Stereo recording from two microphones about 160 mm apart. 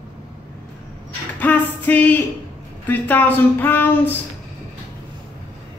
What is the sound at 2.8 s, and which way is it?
Speech, 10° left (ahead or behind).